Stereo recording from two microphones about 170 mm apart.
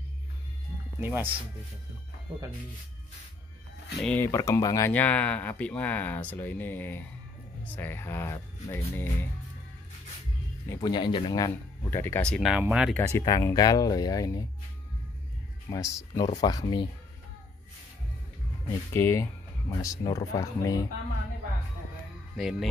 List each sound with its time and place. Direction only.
1.0 s speech: 10° right (ahead or behind)
4.0 s speech: 10° left (ahead or behind)
4.3 s speech: 20° left (ahead or behind)
10.7 s speech: 25° left (ahead or behind); by 12.9 s 5° right (ahead or behind)
12.9 s speech: 20° left (ahead or behind)
15.7 s speech: 15° left (ahead or behind)
18.9 s speech: 15° left (ahead or behind)
22.4 s speech: centre (ahead or behind)